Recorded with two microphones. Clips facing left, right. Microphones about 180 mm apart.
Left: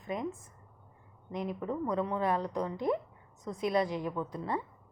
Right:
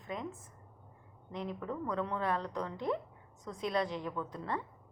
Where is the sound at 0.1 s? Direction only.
15° left (ahead or behind).